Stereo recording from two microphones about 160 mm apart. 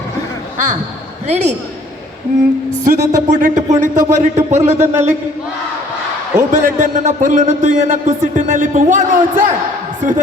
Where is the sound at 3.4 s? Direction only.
55° right (ahead or behind).